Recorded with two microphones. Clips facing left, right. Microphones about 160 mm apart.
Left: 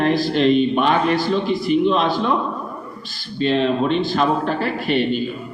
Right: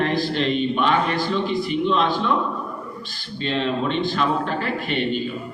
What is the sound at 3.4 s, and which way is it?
A man's voice, 40° left (ahead or behind).